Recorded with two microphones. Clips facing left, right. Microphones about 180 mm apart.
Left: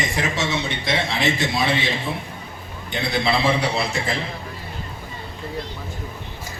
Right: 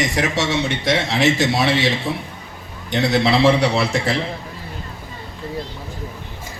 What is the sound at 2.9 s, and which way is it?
A man's voice, 80° right.